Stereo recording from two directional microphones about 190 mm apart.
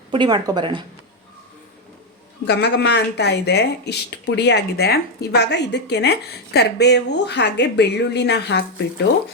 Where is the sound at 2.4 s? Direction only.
60° left (ahead or behind).